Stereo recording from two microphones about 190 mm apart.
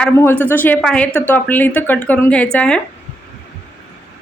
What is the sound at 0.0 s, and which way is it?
A woman's voice, 10° left (ahead or behind).